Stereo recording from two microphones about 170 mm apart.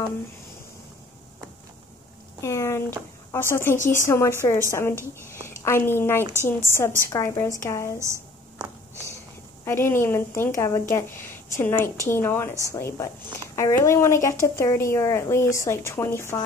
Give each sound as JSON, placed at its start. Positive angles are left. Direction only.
{"t": 2.4, "sound": "a woman's voice", "side_deg": 15}
{"t": 3.7, "sound": "speech", "side_deg": 50}
{"t": 4.0, "sound": "a woman's voice", "side_deg": 15}
{"t": 8.0, "sound": "a sound", "side_deg": -15}
{"t": 9.7, "sound": "a woman's voice", "side_deg": 15}